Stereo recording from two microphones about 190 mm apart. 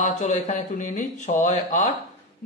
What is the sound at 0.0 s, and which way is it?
Speech, 40° left (ahead or behind).